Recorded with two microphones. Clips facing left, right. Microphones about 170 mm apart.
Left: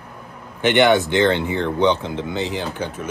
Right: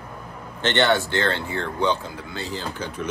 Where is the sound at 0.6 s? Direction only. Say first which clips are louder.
Left 5 dB; 10° left (ahead or behind).